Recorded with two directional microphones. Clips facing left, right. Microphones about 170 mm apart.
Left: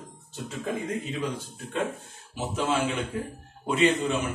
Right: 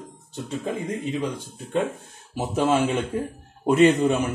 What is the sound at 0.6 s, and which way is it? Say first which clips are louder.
Speech: right 1 dB; 30° right (ahead or behind).